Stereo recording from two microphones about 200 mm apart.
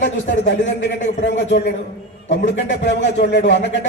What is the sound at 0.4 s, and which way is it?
Speech, 60° left (ahead or behind).